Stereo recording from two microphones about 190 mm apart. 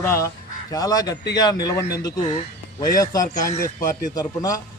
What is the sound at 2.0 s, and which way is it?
Speech, 30° left (ahead or behind).